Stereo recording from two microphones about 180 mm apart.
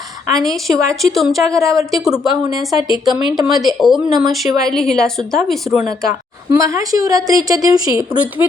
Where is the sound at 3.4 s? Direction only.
20° right (ahead or behind).